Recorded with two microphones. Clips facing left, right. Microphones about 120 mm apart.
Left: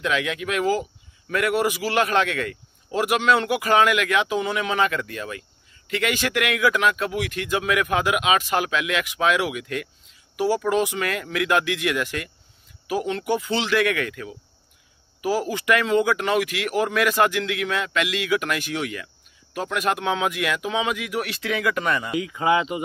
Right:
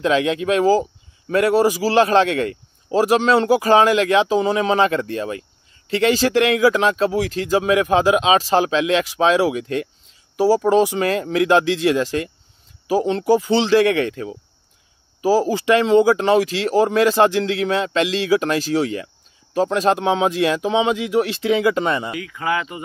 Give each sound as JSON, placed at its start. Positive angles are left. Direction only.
{"t": 0.0, "sound": "a man's voice", "side_deg": -30}
{"t": 22.1, "sound": "speech", "side_deg": 20}